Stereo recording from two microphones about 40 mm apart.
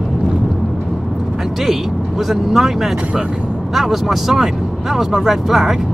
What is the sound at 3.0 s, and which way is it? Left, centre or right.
Speech, right.